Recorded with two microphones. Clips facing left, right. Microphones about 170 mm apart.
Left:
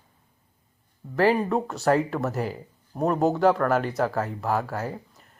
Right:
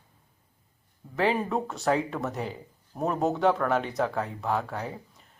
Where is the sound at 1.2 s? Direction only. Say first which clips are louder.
Left 4 dB; centre (ahead or behind).